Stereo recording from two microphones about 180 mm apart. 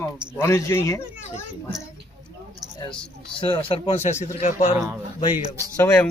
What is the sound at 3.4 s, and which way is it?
Speech, 30° left (ahead or behind).